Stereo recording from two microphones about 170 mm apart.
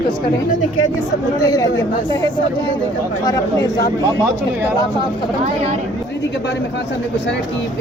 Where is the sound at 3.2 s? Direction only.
20° left (ahead or behind).